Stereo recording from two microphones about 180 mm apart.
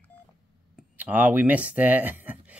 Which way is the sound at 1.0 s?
10° right (ahead or behind).